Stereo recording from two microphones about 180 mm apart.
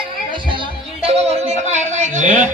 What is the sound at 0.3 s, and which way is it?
Music, 25° right (ahead or behind).